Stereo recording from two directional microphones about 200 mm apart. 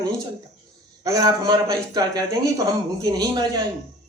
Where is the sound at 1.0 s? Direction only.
20° right (ahead or behind).